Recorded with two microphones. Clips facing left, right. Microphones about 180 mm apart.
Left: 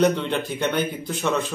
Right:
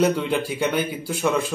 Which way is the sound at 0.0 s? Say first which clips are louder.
Even; 5° right (ahead or behind).